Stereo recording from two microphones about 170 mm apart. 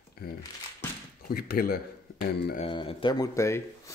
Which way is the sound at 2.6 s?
30° left (ahead or behind).